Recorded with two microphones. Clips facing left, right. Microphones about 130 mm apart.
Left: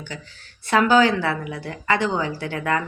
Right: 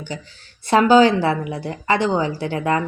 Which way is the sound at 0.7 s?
25° right (ahead or behind).